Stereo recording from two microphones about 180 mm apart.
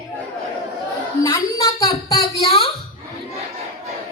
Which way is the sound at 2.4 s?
30° left (ahead or behind).